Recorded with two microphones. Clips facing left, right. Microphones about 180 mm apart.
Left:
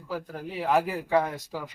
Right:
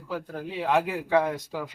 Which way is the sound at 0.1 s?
5° left (ahead or behind).